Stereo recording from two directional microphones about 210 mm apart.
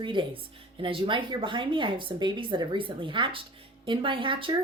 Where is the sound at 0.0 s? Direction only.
25° right (ahead or behind).